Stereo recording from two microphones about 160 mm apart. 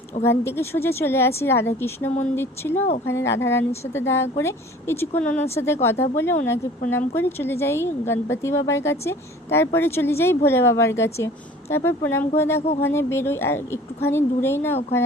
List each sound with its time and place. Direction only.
0.3 s speech: 15° left (ahead or behind)